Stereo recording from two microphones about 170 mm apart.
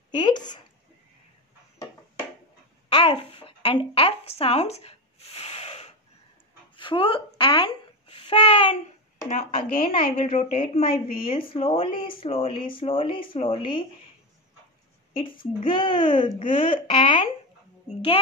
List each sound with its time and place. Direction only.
0.1 s a child's voice: 25° left (ahead or behind)
2.9 s babbling: 30° left (ahead or behind)
9.3 s speech: 40° left (ahead or behind)
15.1 s a child's voice: 30° left (ahead or behind)